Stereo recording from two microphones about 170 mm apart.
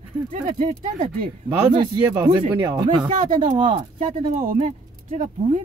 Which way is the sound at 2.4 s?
25° right (ahead or behind).